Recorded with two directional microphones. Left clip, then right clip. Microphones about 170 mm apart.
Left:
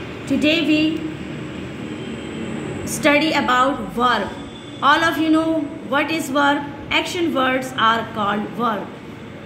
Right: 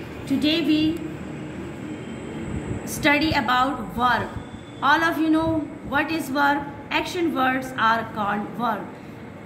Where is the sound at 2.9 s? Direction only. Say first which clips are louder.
Left 4 dB; 25° left (ahead or behind).